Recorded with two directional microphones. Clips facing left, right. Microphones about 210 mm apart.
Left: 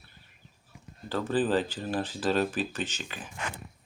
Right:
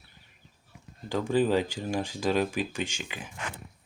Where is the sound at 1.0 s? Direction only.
15° right (ahead or behind).